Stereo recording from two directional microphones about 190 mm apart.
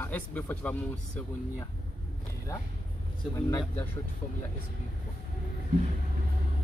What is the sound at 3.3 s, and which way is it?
Speech, 15° left (ahead or behind).